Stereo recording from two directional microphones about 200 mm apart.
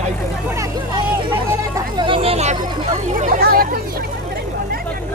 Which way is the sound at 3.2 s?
45° right (ahead or behind).